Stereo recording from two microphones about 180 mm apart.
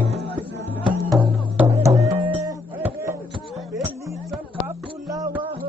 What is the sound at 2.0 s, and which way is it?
Music, 35° right (ahead or behind).